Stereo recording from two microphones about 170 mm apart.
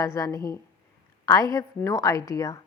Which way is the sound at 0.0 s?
20° left (ahead or behind).